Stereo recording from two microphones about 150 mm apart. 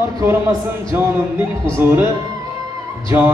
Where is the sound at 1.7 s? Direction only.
15° right (ahead or behind).